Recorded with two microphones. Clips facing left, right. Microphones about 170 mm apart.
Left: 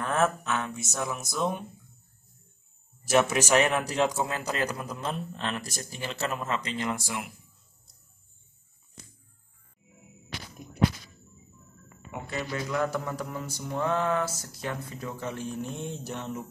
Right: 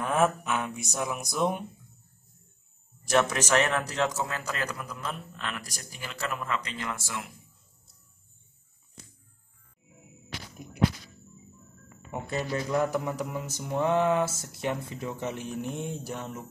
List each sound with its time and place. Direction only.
0.0 s a sound: 10° right (ahead or behind)
1.0 s mantra: 15° right (ahead or behind)
3.1 s a man's voice: 5° left (ahead or behind)
12.1 s speech: 30° right (ahead or behind)
12.8 s mantra: 15° right (ahead or behind)